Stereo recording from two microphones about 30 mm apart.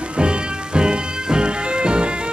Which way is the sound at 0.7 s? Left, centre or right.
Right.